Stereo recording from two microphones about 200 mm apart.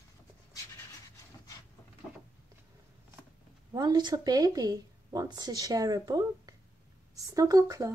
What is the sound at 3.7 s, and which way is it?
Speech, 20° right (ahead or behind).